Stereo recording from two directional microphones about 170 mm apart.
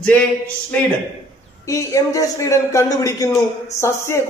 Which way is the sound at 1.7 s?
20° left (ahead or behind).